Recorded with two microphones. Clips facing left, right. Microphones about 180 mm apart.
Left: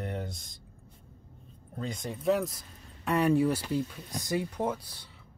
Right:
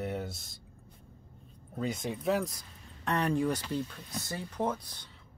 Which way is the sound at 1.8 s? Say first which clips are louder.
Right 2 dB; 5° right (ahead or behind).